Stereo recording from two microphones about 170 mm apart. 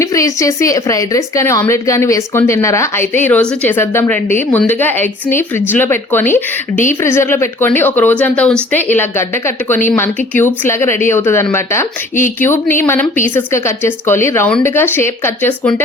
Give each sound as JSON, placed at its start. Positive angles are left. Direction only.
{"t": 0.0, "sound": "a woman's voice", "side_deg": 20}